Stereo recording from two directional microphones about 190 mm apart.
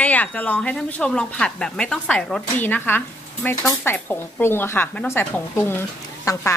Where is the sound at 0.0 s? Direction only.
10° left (ahead or behind).